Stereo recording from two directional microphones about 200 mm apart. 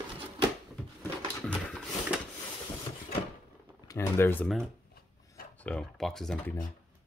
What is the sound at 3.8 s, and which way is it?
Speech, 15° left (ahead or behind).